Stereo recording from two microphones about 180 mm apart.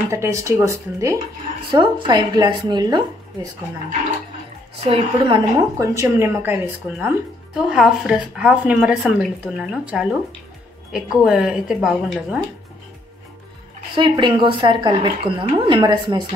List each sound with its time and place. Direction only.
0.1 s a woman's voice: 15° right (ahead or behind)
4.7 s a woman's voice: 30° right (ahead or behind); by 12.4 s 5° right (ahead or behind)
13.9 s a woman's voice: 25° right (ahead or behind)